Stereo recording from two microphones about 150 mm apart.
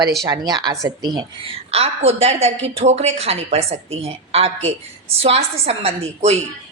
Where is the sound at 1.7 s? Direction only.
45° right (ahead or behind).